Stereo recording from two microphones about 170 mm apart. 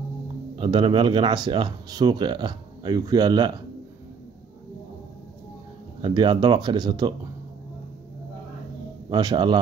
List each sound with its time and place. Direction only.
0.6 s speech: 30° right (ahead or behind)
6.0 s speech: 25° right (ahead or behind)
9.1 s speech: 25° right (ahead or behind)